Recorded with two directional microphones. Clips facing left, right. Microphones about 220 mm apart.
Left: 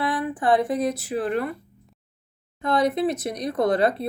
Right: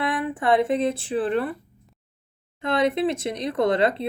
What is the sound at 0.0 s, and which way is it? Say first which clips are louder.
Speech: even; 25° right (ahead or behind).